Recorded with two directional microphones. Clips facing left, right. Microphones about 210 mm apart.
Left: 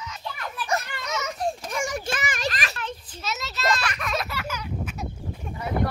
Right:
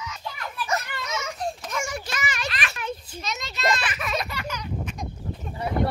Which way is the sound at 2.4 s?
35° left (ahead or behind).